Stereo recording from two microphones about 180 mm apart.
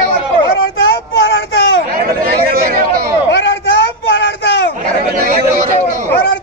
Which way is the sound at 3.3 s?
85° left.